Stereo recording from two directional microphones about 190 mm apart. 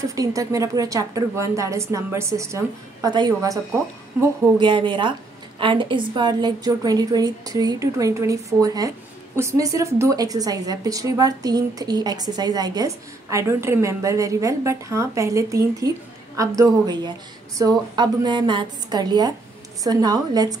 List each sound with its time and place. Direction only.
0.0 s a woman's voice: 15° right (ahead or behind)